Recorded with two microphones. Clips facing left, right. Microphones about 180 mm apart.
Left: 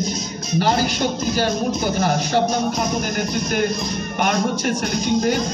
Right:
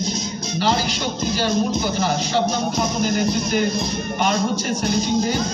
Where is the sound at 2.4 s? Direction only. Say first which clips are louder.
Left 1 dB; 5° right (ahead or behind).